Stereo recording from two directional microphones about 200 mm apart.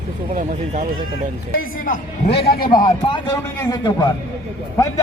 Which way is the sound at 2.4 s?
50° left (ahead or behind).